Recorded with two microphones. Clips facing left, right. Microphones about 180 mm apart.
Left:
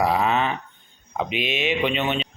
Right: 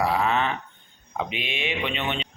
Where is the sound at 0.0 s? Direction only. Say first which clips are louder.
Left 2 dB; 15° left (ahead or behind).